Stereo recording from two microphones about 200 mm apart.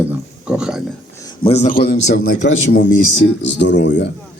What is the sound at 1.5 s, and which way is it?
A man's voice, 35° left (ahead or behind).